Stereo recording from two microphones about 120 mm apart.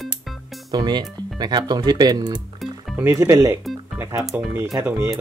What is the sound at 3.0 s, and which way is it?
Speech, 20° right (ahead or behind).